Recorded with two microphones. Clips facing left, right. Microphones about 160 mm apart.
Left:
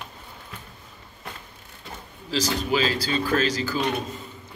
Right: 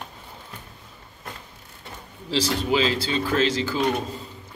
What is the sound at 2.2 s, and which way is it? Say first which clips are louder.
Speech: right 2 dB; 30° right (ahead or behind).